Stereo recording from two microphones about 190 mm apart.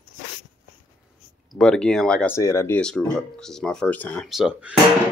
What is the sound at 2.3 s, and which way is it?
Speech, 15° left (ahead or behind).